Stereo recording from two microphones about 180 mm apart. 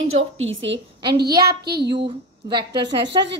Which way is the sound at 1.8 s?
25° right (ahead or behind).